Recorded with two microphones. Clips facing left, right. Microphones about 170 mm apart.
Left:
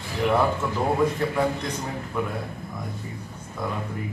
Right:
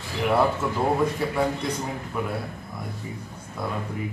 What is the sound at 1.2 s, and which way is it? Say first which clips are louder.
Speech: left 1 dB; 10° right (ahead or behind).